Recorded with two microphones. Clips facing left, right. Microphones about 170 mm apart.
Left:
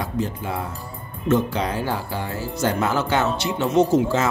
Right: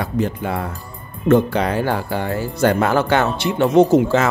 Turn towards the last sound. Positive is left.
turn(degrees=-65)  # may be behind; listen again after turning